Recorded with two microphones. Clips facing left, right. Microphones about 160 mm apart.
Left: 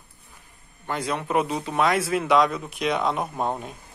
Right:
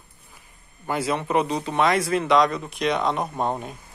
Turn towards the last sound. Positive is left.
turn(degrees=0)  # may be behind; listen again after turning